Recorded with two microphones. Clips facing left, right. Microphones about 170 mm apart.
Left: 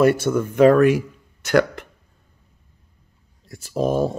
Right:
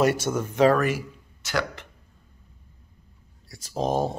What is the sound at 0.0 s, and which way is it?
Speech, 55° left (ahead or behind).